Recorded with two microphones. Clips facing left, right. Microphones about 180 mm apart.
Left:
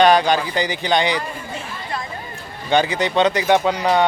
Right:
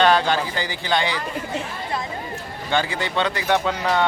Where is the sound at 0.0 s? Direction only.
15° left (ahead or behind).